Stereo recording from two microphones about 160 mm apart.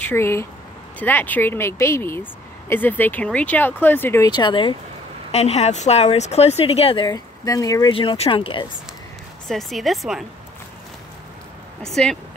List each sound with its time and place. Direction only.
0.0 s speech: 15° left (ahead or behind)
4.3 s speech: 30° left (ahead or behind)
5.3 s speech: 40° left (ahead or behind)
7.1 s speech: 25° left (ahead or behind)
7.9 s speech: 35° left (ahead or behind)
9.5 s speech: centre (ahead or behind)
11.8 s speech: 5° left (ahead or behind)